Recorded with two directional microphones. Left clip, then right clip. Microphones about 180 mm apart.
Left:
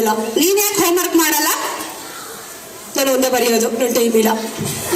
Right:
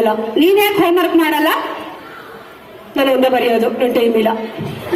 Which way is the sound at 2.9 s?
20° right (ahead or behind).